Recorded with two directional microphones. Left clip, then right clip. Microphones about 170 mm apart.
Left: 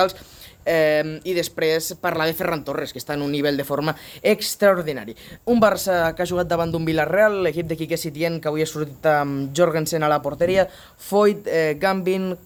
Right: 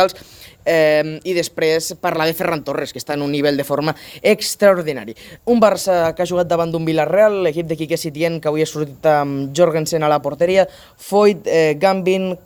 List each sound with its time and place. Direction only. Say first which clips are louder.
0.6 s speech: right 4 dB; 40° right (ahead or behind); by 12.4 s 15° right (ahead or behind)